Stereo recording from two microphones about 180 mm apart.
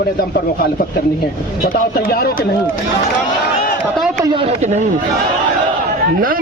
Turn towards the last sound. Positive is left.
turn(degrees=-40)  # may be behind; listen again after turning